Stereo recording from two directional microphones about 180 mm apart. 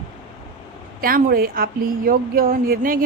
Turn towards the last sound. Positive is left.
turn(degrees=-50)  # may be behind; listen again after turning